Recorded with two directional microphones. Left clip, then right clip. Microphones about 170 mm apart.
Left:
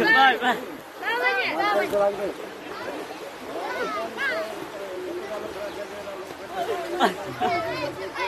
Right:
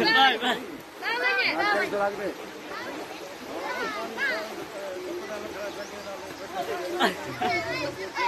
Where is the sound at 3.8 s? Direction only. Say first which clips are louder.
Left 2 dB; 75° left (ahead or behind).